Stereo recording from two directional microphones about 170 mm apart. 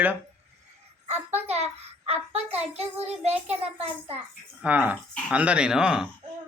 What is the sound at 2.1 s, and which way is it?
Child singing, 35° right (ahead or behind).